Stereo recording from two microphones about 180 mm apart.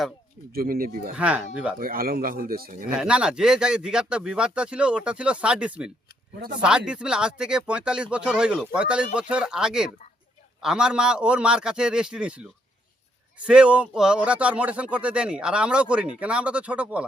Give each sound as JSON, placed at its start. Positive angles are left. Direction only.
{"t": 0.5, "sound": "speech", "side_deg": -55}
{"t": 1.2, "sound": "speech", "side_deg": -5}
{"t": 1.8, "sound": "speech", "side_deg": -55}
{"t": 2.9, "sound": "speech", "side_deg": -5}
{"t": 13.5, "sound": "speech", "side_deg": -5}